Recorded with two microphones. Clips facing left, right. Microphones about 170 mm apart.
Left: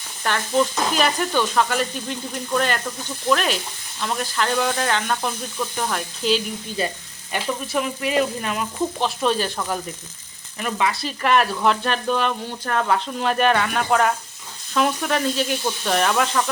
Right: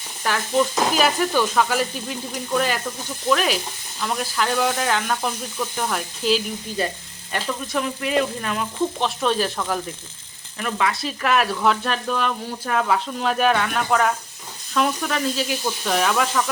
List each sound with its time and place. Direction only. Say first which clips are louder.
0.2 s stir: even; 5° right (ahead or behind)
0.9 s speech: even; 5° right (ahead or behind)
7.3 s speech: left 1 dB; 10° left (ahead or behind)